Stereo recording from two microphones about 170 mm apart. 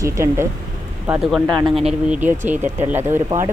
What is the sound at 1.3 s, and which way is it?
Speech, centre (ahead or behind).